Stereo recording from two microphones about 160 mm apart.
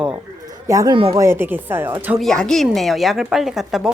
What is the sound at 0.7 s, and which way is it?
Speech, 20° right (ahead or behind).